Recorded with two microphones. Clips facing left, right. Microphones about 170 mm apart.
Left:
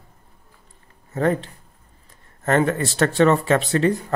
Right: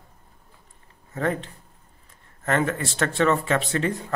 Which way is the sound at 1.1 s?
40° left (ahead or behind).